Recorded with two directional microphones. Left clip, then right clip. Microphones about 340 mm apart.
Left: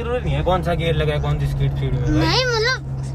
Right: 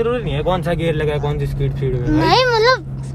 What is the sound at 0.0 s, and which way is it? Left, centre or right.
Speech, right.